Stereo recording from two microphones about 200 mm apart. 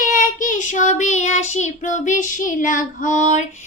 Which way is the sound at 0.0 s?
40° left (ahead or behind).